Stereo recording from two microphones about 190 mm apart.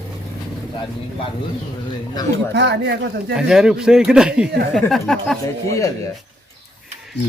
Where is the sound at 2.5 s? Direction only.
60° right (ahead or behind).